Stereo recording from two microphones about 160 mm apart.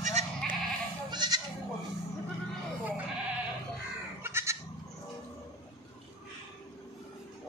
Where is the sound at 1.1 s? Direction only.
25° right (ahead or behind).